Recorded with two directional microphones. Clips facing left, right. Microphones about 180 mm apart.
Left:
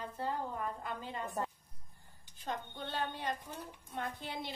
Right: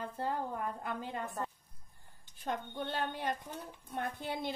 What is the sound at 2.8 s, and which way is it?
A woman's voice, 50° right (ahead or behind).